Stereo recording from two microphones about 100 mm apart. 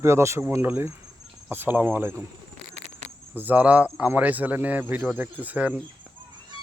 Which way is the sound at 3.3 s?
15° right (ahead or behind).